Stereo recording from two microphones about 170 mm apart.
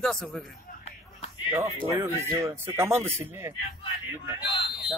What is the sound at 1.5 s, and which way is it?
Speech, 15° right (ahead or behind).